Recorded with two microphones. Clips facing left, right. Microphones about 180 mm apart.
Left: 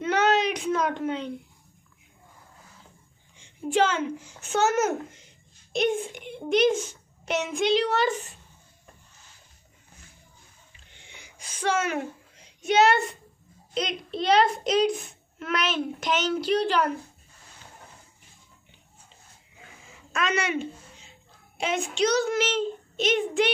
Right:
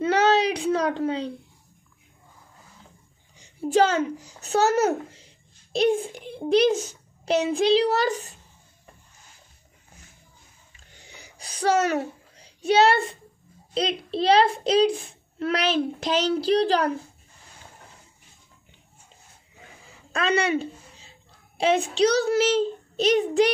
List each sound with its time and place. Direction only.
0.0 s a sound: 30° right (ahead or behind)
3.3 s a child's voice: 40° right (ahead or behind)
11.0 s sneeze: 35° right (ahead or behind)
13.7 s a child's voice: 30° right (ahead or behind)
19.9 s a sound: 35° right (ahead or behind)
21.5 s a child's voice: 30° right (ahead or behind)